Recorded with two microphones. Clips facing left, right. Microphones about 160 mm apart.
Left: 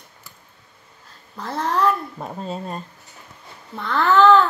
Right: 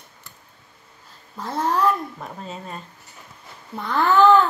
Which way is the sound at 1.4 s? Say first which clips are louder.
Even; 5° right (ahead or behind).